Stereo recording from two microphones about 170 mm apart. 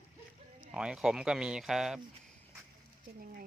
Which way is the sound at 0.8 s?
5° right (ahead or behind).